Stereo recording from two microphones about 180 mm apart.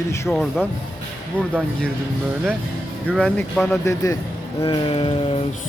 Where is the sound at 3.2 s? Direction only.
5° left (ahead or behind).